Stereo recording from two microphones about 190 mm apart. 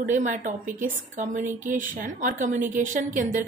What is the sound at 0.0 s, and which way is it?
A woman's voice, 40° right (ahead or behind).